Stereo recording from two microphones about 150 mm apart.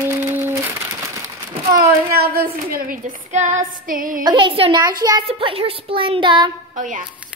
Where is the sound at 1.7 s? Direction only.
75° right (ahead or behind).